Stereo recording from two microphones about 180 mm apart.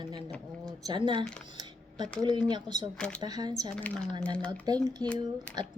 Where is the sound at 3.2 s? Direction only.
20° right (ahead or behind).